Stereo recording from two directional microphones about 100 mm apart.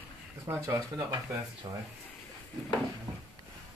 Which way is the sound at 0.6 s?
30° right (ahead or behind).